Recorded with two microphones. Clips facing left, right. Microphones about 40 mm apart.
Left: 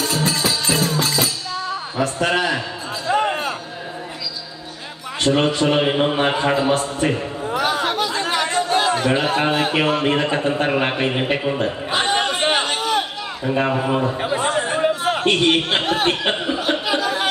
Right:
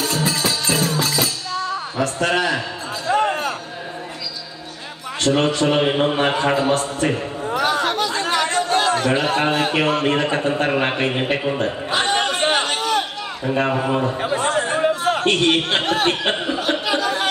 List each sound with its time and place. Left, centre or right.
0.0 s music: centre
3.1 s a sound: centre
5.3 s a man's voice: centre
5.7 s a man's voice: centre
7.4 s chatter: centre
10.7 s a man's voice: centre
11.6 s a sound: centre